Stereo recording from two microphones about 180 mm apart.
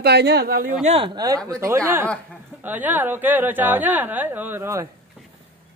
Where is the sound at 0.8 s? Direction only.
30° right (ahead or behind); by 4.8 s 15° right (ahead or behind).